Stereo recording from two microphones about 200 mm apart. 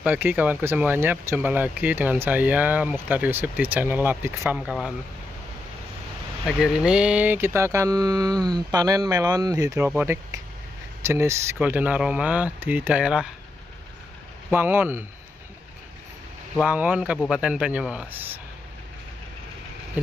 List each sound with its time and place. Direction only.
0.0 s speech: 10° right (ahead or behind)
6.4 s speech: centre (ahead or behind)
14.5 s speech: 10° right (ahead or behind)
16.5 s speech: 10° right (ahead or behind)